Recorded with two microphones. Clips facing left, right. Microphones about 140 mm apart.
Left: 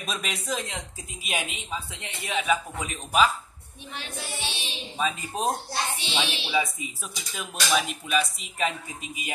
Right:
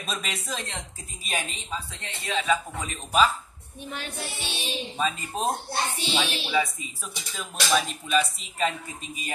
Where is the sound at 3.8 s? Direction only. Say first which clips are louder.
Right 3 dB; 45° right (ahead or behind).